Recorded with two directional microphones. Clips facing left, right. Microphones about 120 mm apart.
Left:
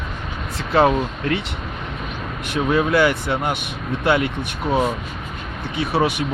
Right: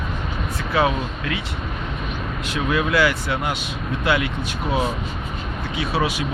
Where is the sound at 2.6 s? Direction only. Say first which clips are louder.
Left 4 dB; 30° left (ahead or behind).